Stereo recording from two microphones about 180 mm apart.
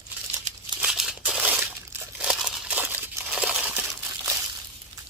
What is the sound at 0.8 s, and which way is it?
Crumpling, 5° right (ahead or behind).